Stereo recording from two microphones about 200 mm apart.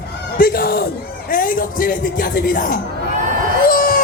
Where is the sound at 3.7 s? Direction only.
45° left (ahead or behind).